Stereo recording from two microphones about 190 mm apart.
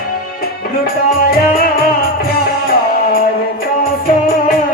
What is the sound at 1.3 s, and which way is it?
Music, 50° left (ahead or behind).